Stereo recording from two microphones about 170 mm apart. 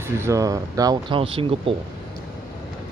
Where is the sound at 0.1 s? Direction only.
15° right (ahead or behind); by 1.8 s 30° right (ahead or behind).